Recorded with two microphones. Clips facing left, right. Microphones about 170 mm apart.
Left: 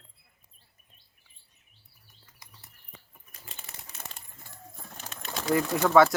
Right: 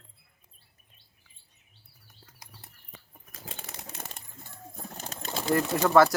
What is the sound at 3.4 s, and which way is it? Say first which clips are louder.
Typewriter: right 6 dB; 80° right.